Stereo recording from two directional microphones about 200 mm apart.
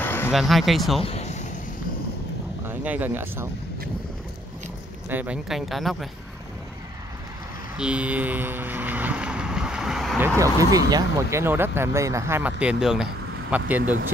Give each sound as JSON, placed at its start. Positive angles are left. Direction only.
{"t": 0.0, "sound": "a sound", "side_deg": 10}
{"t": 0.3, "sound": "speech", "side_deg": 0}
{"t": 1.0, "sound": "a sound", "side_deg": 30}
{"t": 2.6, "sound": "speech", "side_deg": -10}
{"t": 5.1, "sound": "speech", "side_deg": -5}
{"t": 7.7, "sound": "vehicle", "side_deg": -5}